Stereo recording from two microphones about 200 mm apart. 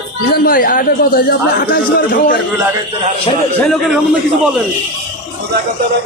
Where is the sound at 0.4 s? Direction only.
45° left (ahead or behind).